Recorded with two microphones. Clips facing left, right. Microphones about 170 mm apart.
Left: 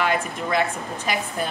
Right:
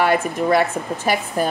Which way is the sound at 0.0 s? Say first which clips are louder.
Right 6 dB; 40° right (ahead or behind).